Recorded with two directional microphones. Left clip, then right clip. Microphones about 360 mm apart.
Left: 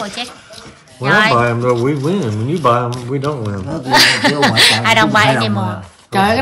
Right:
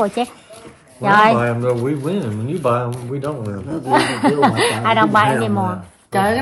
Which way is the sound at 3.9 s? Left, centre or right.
Centre.